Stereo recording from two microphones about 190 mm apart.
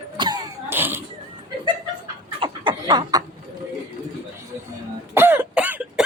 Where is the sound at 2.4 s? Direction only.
25° right (ahead or behind).